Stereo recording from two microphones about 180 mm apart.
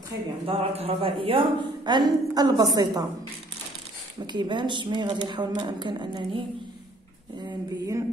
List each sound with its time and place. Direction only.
0.5 s a woman's voice: 35° right (ahead or behind)
4.3 s a woman's voice: 25° right (ahead or behind)